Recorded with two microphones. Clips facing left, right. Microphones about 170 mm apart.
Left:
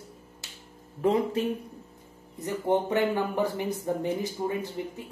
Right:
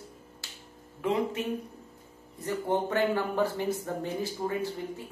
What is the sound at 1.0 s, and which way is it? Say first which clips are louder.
Speech: left 4 dB; 40° left (ahead or behind).